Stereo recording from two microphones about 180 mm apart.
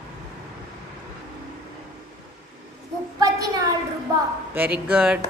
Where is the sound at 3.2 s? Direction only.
20° right (ahead or behind).